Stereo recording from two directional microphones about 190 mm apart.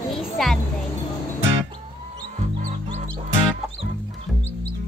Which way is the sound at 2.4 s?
35° right (ahead or behind).